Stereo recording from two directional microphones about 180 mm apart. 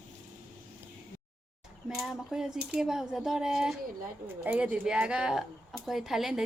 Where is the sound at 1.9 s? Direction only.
Centre (ahead or behind).